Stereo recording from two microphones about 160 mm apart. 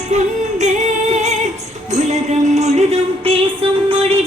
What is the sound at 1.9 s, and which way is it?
Music, 45° right (ahead or behind).